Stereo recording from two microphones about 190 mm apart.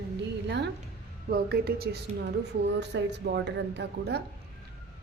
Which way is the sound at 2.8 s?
65° right (ahead or behind).